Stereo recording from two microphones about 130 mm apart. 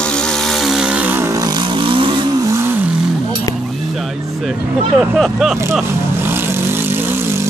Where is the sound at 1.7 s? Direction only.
40° right (ahead or behind).